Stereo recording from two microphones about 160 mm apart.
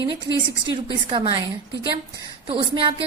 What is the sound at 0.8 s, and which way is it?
Speech, 30° right (ahead or behind).